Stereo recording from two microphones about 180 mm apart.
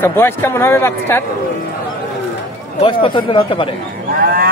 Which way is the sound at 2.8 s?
30° left (ahead or behind).